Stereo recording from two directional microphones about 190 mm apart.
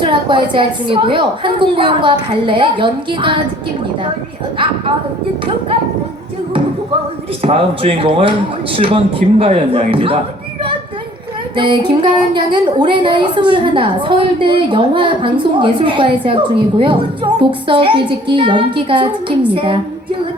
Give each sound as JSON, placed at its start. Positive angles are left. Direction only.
{"t": 0.0, "sound": "a woman's voice", "side_deg": -25}
{"t": 7.4, "sound": "a woman's voice", "side_deg": -30}
{"t": 11.5, "sound": "a woman's voice", "side_deg": -25}